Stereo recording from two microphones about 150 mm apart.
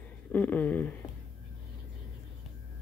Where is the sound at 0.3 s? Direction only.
10° left (ahead or behind).